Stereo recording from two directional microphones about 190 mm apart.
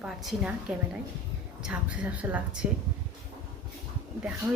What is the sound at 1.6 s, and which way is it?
A woman's voice, 5° right (ahead or behind).